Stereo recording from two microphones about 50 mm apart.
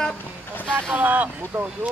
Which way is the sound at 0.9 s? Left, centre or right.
Right.